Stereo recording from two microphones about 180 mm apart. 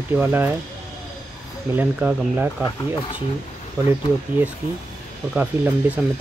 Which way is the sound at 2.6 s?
25° left (ahead or behind).